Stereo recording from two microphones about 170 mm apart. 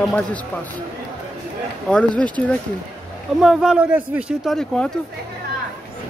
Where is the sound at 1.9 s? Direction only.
5° left (ahead or behind).